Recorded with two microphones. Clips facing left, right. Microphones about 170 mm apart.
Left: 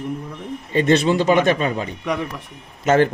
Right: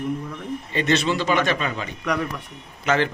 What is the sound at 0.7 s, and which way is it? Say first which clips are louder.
A man's voice: left 6 dB; 50° left (ahead or behind).